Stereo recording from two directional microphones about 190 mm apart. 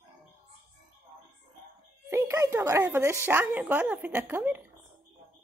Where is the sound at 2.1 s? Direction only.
15° right (ahead or behind).